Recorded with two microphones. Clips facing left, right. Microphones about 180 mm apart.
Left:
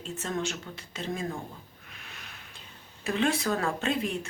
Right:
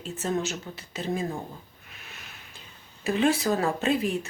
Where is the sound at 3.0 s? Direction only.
5° right (ahead or behind).